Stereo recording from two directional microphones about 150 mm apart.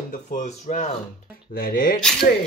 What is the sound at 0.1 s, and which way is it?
Speech, 60° left (ahead or behind).